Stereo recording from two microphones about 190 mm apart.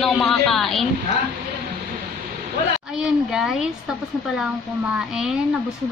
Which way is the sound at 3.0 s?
Centre (ahead or behind).